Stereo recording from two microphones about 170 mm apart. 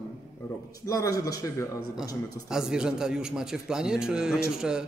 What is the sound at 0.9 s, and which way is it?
Speech, 20° left (ahead or behind).